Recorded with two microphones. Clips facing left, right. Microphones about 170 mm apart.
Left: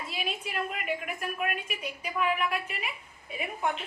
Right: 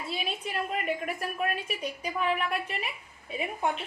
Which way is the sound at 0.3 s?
35° right (ahead or behind).